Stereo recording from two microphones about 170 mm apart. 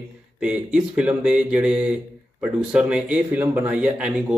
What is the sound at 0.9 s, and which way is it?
A man's voice, 5° right (ahead or behind).